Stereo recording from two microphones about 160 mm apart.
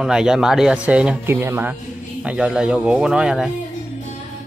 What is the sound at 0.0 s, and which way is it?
Speech, 5° right (ahead or behind).